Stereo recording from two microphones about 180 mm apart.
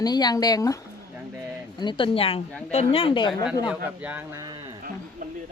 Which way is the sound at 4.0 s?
10° right (ahead or behind).